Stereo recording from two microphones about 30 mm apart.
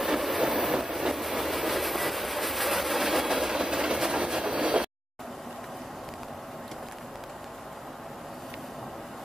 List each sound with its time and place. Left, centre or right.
0.0 s vehicle: centre
0.5 s train: centre
3.5 s train: centre
4.6 s a sound: right